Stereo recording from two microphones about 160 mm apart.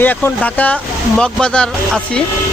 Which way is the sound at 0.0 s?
10° left (ahead or behind).